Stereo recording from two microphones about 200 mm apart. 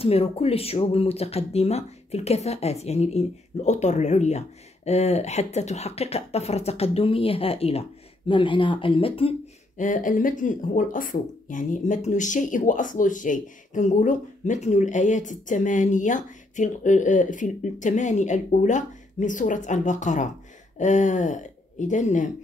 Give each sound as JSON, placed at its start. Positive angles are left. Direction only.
{"t": 0.0, "sound": "speech", "side_deg": 30}
{"t": 9.8, "sound": "a woman's voice", "side_deg": 40}